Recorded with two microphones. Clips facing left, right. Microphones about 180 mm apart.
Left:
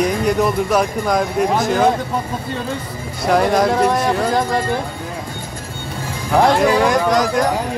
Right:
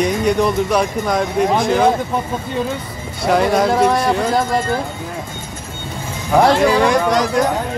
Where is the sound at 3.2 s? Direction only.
Centre (ahead or behind).